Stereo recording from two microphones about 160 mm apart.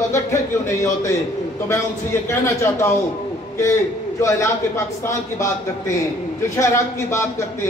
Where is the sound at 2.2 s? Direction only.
15° left (ahead or behind).